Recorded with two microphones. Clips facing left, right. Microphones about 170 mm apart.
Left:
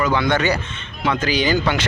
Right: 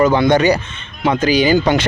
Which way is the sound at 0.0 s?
40° right (ahead or behind).